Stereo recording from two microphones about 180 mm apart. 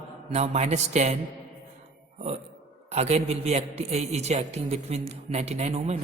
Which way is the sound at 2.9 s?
35° right (ahead or behind).